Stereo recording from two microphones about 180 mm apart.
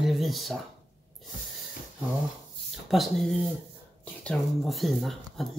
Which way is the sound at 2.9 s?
Centre (ahead or behind).